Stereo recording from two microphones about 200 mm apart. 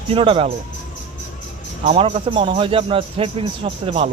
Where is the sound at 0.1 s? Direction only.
25° right (ahead or behind).